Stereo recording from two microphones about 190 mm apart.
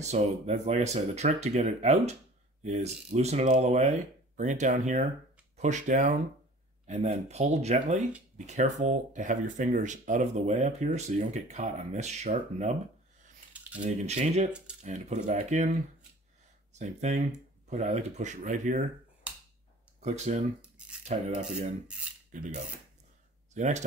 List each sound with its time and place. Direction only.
0.0 s speech: 35° right (ahead or behind)
13.8 s speech: 35° right (ahead or behind)
16.7 s speech: 35° right (ahead or behind)
20.0 s speech: 35° right (ahead or behind)
20.6 s cutlery: 5° right (ahead or behind)
21.0 s speech: 40° right (ahead or behind)
23.5 s speech: 40° right (ahead or behind)